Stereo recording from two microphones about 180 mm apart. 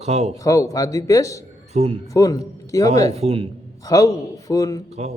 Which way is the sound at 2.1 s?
20° left (ahead or behind).